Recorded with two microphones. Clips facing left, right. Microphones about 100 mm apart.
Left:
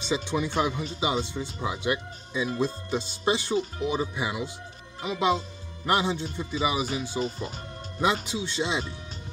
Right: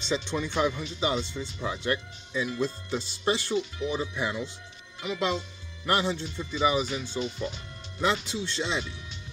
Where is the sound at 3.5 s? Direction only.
40° left (ahead or behind).